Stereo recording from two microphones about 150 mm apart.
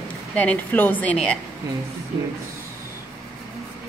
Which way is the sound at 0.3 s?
10° left (ahead or behind).